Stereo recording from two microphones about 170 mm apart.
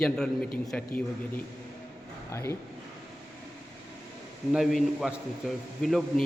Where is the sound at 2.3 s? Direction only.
15° left (ahead or behind).